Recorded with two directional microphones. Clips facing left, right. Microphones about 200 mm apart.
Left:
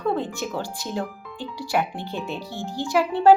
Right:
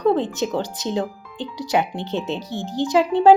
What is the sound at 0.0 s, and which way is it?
Speech, 20° right (ahead or behind).